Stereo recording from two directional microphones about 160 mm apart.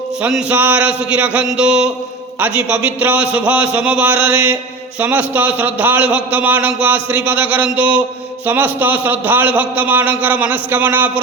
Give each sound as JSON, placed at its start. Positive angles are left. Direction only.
{"t": 0.2, "sound": "a man's voice", "side_deg": -5}